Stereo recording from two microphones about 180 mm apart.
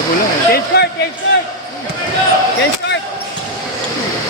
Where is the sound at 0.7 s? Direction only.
65° left (ahead or behind).